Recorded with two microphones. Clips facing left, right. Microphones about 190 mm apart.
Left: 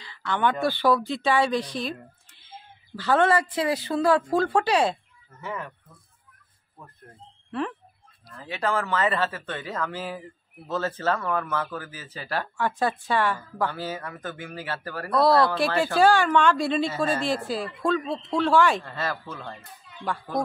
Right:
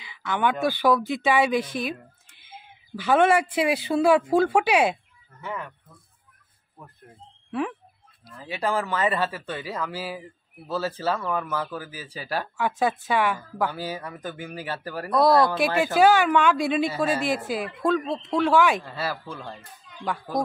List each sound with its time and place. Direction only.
0.3 s a woman's voice: 10° right (ahead or behind)
3.0 s speech: 15° right (ahead or behind)
5.4 s a woman's voice: centre (ahead or behind)
8.3 s speech: 10° right (ahead or behind)
16.0 s a woman's voice: 5° right (ahead or behind)
17.3 s speech: 20° right (ahead or behind)
18.5 s a woman's voice: 5° right (ahead or behind)